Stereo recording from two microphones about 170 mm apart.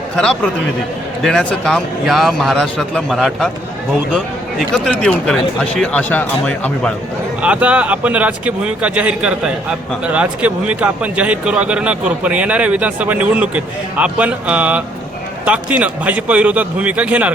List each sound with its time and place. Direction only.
1.2 s speech: centre (ahead or behind)
7.4 s speech: 5° right (ahead or behind)